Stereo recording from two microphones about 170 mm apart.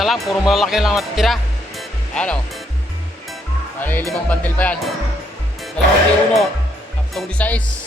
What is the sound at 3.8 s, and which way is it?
Speech, 10° left (ahead or behind).